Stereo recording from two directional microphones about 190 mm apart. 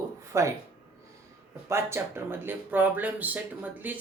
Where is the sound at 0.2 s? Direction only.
15° right (ahead or behind).